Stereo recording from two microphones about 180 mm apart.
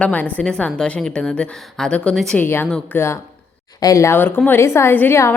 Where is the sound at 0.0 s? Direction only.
10° left (ahead or behind).